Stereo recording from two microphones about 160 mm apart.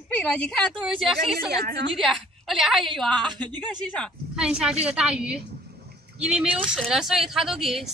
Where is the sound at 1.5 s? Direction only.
90° right.